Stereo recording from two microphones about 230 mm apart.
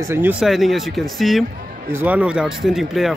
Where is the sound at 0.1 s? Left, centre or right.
Centre.